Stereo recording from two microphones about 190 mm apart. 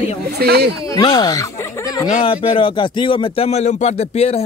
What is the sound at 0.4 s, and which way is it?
Speech, 55° right (ahead or behind).